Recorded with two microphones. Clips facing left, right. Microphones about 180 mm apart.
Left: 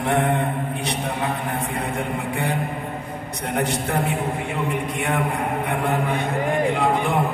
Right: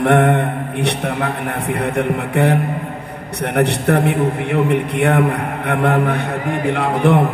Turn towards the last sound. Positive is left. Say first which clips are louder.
# right 6 dB
turn(degrees=-70)  # may be behind; listen again after turning